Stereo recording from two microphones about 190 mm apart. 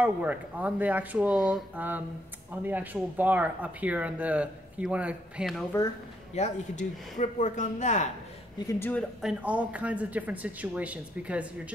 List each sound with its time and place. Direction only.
0.0 s speech: 10° right (ahead or behind)
6.3 s speech: 40° left (ahead or behind)
8.6 s speech: 10° left (ahead or behind)
9.2 s speech: 5° right (ahead or behind)